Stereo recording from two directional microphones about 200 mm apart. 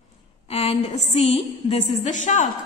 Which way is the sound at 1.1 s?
30° left (ahead or behind).